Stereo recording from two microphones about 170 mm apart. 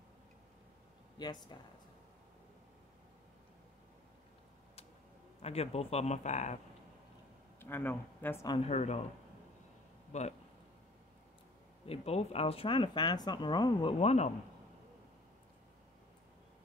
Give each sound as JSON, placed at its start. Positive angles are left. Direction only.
{"t": 1.1, "sound": "speech", "side_deg": 25}
{"t": 5.4, "sound": "speech", "side_deg": 40}
{"t": 7.6, "sound": "speech", "side_deg": 10}
{"t": 8.6, "sound": "speech", "side_deg": 40}
{"t": 10.1, "sound": "speech", "side_deg": 45}
{"t": 11.8, "sound": "speech", "side_deg": 35}
{"t": 13.9, "sound": "speech", "side_deg": 40}